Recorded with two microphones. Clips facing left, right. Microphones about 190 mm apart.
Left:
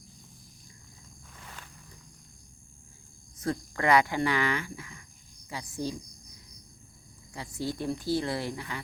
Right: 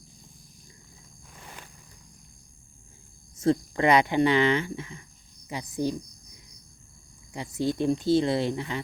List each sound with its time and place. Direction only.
3.3 s speech: 25° right (ahead or behind)
7.3 s speech: 20° right (ahead or behind)